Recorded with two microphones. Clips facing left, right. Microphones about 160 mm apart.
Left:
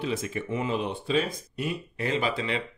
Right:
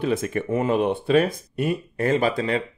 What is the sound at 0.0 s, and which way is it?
Speech, 55° right (ahead or behind).